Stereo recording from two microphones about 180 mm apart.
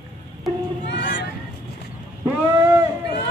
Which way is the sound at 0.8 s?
75° left (ahead or behind).